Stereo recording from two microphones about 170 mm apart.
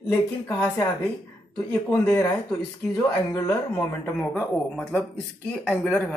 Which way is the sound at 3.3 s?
15° left (ahead or behind).